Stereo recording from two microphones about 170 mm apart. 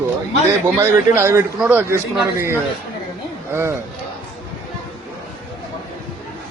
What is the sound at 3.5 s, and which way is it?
Speech, 15° right (ahead or behind).